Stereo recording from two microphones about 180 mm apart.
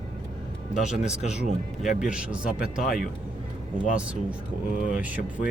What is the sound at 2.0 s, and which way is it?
A man's voice, 5° right (ahead or behind).